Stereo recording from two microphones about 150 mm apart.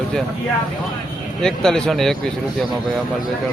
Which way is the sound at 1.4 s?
5° left (ahead or behind).